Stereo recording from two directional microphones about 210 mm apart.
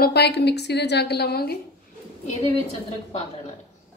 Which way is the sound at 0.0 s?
50° left (ahead or behind).